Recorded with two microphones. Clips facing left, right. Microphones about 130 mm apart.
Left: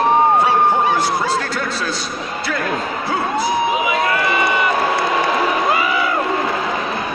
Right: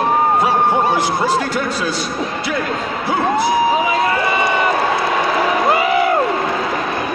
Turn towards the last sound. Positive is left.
turn(degrees=-55)  # may be behind; listen again after turning